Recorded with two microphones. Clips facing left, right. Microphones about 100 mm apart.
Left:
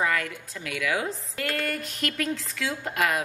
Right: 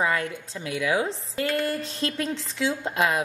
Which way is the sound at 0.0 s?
25° right (ahead or behind).